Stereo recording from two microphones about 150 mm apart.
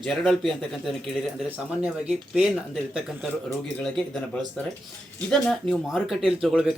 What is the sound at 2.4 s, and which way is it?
Speech, 5° right (ahead or behind).